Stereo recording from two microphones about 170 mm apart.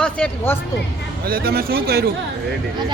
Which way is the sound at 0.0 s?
10° left (ahead or behind).